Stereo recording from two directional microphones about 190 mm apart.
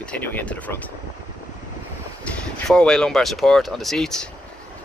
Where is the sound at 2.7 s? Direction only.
5° left (ahead or behind).